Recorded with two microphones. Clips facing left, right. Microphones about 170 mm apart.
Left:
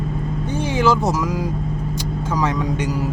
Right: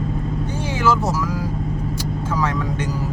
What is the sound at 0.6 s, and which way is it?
Speech, 20° left (ahead or behind).